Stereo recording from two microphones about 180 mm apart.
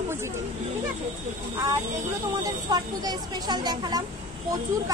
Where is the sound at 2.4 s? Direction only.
20° right (ahead or behind).